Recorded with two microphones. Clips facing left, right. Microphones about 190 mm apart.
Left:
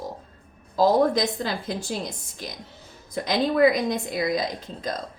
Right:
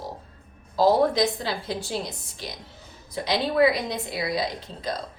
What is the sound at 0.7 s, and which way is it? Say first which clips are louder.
A woman's voice: left 1 dB; 45° left (ahead or behind).